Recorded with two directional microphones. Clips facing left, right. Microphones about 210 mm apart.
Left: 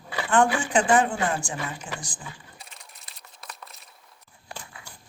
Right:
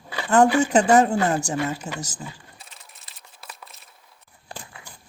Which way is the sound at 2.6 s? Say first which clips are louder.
Even; centre (ahead or behind).